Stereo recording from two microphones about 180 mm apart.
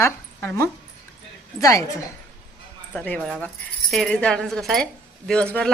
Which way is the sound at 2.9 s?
5° left (ahead or behind).